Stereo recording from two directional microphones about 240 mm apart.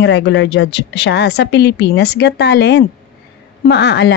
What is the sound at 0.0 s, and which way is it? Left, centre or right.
Speech, left.